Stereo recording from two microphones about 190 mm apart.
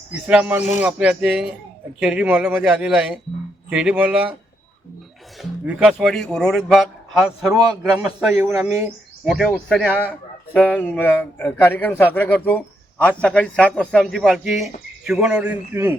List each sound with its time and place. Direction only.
0.1 s a man's voice: 5° right (ahead or behind)
5.4 s a man's voice: centre (ahead or behind)
9.2 s a man's voice: centre (ahead or behind)